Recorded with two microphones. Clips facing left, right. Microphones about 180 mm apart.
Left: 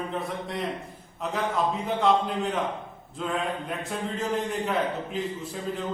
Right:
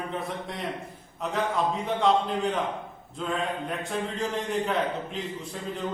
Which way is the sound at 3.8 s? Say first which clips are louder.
Right 1 dB; centre (ahead or behind).